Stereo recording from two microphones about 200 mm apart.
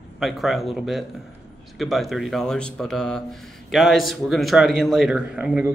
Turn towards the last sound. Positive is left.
turn(degrees=-5)  # may be behind; listen again after turning